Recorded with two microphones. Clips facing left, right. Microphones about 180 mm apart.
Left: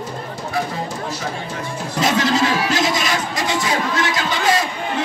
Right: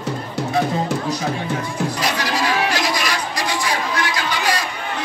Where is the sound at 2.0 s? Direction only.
25° left (ahead or behind).